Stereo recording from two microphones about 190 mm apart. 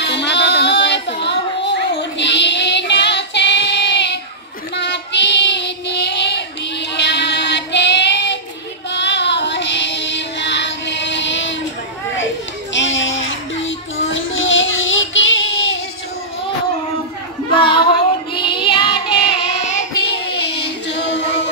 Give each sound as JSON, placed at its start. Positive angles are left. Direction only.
{"t": 0.0, "sound": "children playing", "side_deg": 65}
{"t": 4.7, "sound": "child singing", "side_deg": 65}
{"t": 12.7, "sound": "a sound", "side_deg": 80}
{"t": 17.6, "sound": "female singing", "side_deg": 25}
{"t": 18.3, "sound": "child singing", "side_deg": 25}
{"t": 20.2, "sound": "music", "side_deg": 60}